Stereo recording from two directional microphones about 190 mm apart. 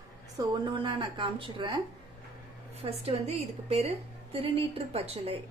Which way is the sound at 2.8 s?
30° right (ahead or behind).